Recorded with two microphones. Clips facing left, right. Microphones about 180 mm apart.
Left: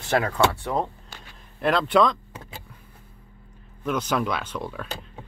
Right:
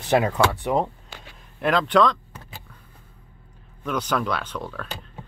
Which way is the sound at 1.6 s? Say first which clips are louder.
Right 1 dB; centre (ahead or behind).